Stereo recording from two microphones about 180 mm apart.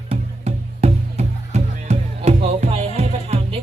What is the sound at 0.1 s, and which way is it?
Music, 35° right (ahead or behind).